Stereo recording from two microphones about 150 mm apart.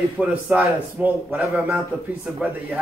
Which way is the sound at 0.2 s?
10° right (ahead or behind).